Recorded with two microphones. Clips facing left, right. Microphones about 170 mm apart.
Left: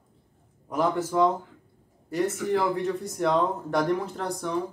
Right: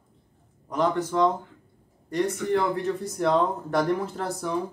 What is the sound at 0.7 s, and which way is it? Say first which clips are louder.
A man's voice: right 1 dB; 5° left (ahead or behind).